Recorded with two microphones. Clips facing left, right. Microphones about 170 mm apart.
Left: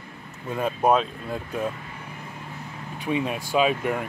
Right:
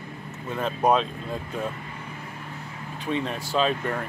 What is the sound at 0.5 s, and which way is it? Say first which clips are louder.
Speech: left 1 dB; 5° left (ahead or behind).